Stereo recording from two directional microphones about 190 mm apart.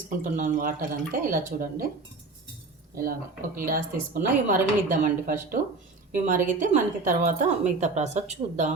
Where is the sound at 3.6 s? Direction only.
50° right (ahead or behind).